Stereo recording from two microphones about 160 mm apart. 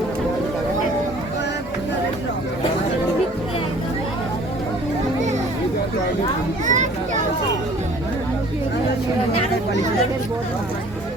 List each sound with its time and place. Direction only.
6.7 s children playing: 50° right (ahead or behind)